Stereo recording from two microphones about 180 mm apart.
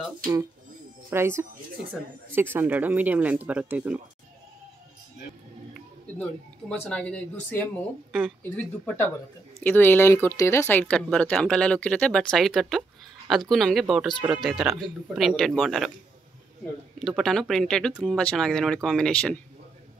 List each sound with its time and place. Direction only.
1.1 s speech: 15° right (ahead or behind)
2.5 s speech: 10° right (ahead or behind)
6.7 s speech: 5° left (ahead or behind)
17.0 s speech: centre (ahead or behind)